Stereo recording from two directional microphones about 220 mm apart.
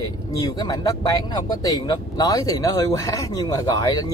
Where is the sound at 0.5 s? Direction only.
15° left (ahead or behind).